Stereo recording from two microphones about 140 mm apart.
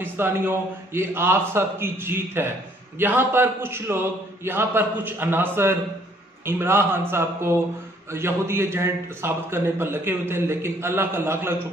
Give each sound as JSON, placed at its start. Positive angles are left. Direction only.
{"t": 0.0, "sound": "a man's voice", "side_deg": -15}